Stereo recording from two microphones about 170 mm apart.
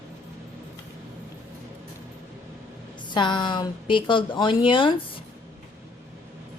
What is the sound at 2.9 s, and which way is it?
A woman's voice, 25° left (ahead or behind).